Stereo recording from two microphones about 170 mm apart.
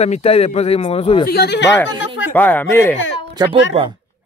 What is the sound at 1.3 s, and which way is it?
Speech, 70° left (ahead or behind).